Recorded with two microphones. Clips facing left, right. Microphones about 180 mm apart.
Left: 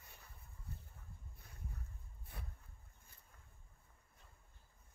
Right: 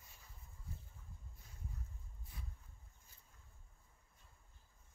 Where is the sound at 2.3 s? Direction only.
60° left (ahead or behind).